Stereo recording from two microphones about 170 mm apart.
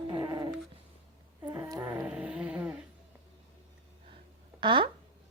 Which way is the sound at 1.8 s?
5° right (ahead or behind).